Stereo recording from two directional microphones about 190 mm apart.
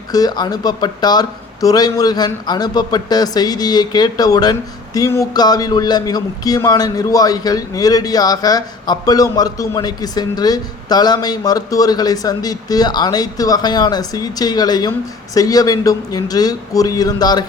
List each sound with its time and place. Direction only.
0.1 s speech: 20° left (ahead or behind)